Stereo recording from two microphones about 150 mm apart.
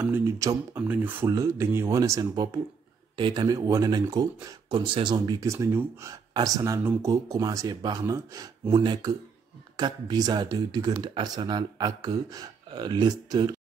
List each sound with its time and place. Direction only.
0.0 s speech: 15° right (ahead or behind)
0.4 s speech: 25° right (ahead or behind)
0.8 s speech: 10° right (ahead or behind)